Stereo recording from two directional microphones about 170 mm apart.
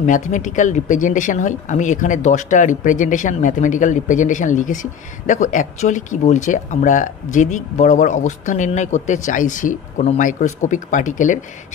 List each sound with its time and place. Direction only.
0.0 s speech: 45° left (ahead or behind)